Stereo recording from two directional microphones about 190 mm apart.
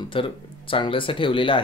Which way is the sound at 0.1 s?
25° left (ahead or behind).